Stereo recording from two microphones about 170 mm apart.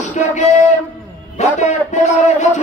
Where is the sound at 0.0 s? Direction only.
45° left (ahead or behind).